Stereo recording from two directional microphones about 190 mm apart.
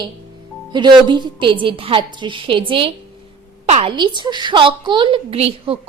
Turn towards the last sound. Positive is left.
turn(degrees=-30)  # may be behind; listen again after turning